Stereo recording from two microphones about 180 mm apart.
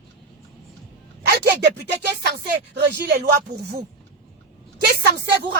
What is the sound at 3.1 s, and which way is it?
Speech, 60° right (ahead or behind).